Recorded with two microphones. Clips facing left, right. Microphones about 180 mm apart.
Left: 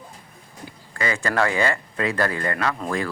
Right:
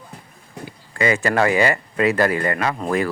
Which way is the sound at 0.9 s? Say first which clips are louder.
Right 5 dB; 20° right (ahead or behind).